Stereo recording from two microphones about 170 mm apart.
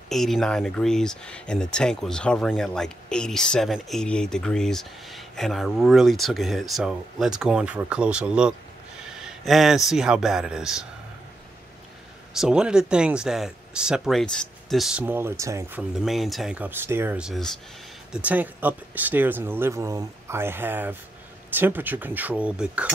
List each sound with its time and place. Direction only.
0.1 s speech: centre (ahead or behind)
9.2 s a sound: centre (ahead or behind)
9.8 s speech: 5° right (ahead or behind)
12.4 s speech: 5° right (ahead or behind)
15.9 s speech: centre (ahead or behind)